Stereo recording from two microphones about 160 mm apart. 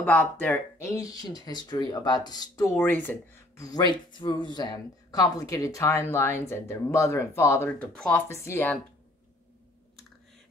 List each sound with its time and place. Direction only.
0.0 s speech: 10° left (ahead or behind)
3.6 s speech: 25° left (ahead or behind)